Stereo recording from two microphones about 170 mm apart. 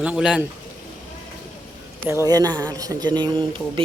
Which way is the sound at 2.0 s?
20° right (ahead or behind).